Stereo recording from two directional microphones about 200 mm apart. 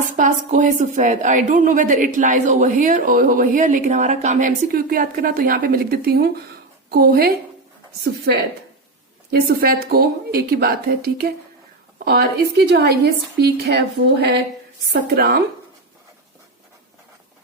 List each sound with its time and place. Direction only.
0.2 s a woman's voice: 40° right (ahead or behind)
8.3 s a woman's voice: 60° right (ahead or behind)
9.3 s a woman's voice: 50° right (ahead or behind)
14.9 s a woman's voice: 50° right (ahead or behind)